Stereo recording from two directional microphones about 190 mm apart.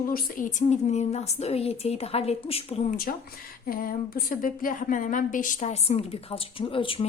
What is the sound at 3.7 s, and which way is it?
A woman's voice, 50° left (ahead or behind).